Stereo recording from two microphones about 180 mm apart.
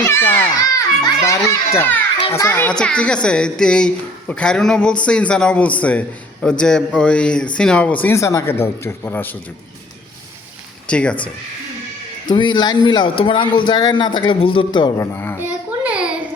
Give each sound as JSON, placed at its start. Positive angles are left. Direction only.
{"t": 0.0, "sound": "a child's voice", "side_deg": 15}
{"t": 10.8, "sound": "speech", "side_deg": 5}
{"t": 12.3, "sound": "a man's voice", "side_deg": 25}
{"t": 15.4, "sound": "a sound", "side_deg": -10}